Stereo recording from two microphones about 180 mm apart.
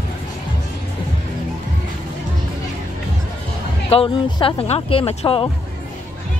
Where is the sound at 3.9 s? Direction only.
30° left (ahead or behind).